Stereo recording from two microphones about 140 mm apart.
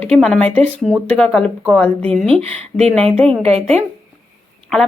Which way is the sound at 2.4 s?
45° right (ahead or behind).